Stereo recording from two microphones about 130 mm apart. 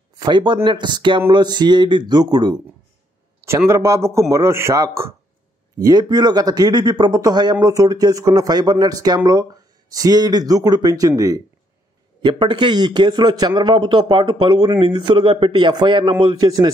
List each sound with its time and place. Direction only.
0.2 s a man's voice: 35° right (ahead or behind)
3.4 s a man's voice: 20° right (ahead or behind)
12.2 s a man's voice: 35° right (ahead or behind)